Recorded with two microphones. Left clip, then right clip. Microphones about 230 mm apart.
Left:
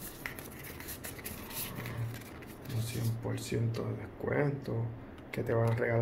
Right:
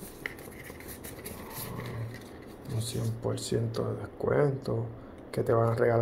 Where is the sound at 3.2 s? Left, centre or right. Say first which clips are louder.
Right 6 dB; centre.